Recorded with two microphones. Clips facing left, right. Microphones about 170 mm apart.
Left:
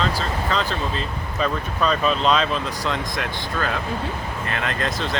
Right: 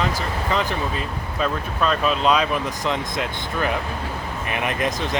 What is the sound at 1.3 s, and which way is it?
Speech, centre (ahead or behind).